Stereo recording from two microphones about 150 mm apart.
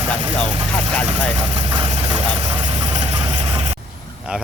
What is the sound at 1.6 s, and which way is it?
Speech, 30° right (ahead or behind).